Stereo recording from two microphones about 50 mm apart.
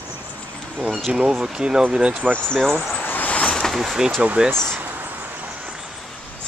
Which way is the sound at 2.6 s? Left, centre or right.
Centre.